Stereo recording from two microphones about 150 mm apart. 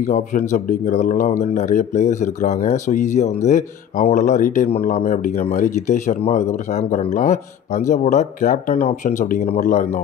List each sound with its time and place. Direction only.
0.0 s speech: 55° left (ahead or behind)